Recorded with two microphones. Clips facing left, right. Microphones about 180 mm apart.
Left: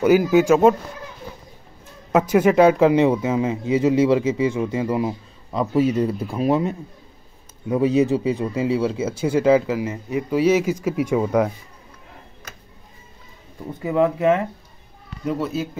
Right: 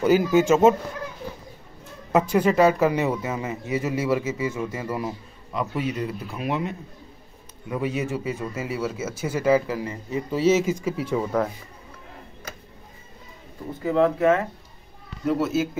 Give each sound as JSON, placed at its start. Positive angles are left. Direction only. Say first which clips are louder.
{"t": 0.0, "sound": "speech", "louder": "left 3 dB", "side_deg": 15}
{"t": 0.4, "sound": "speech", "louder": "even", "side_deg": 0}
{"t": 2.1, "sound": "speech", "louder": "left 4 dB", "side_deg": 10}
{"t": 5.5, "sound": "speech", "louder": "left 8 dB", "side_deg": 35}
{"t": 7.7, "sound": "speech", "louder": "left 9 dB", "side_deg": 35}
{"t": 8.7, "sound": "speech", "louder": "left 6 dB", "side_deg": 15}
{"t": 9.1, "sound": "speech", "louder": "left 4 dB", "side_deg": 30}
{"t": 13.8, "sound": "speech", "louder": "left 1 dB", "side_deg": 15}
{"t": 15.3, "sound": "speech", "louder": "right 2 dB", "side_deg": -5}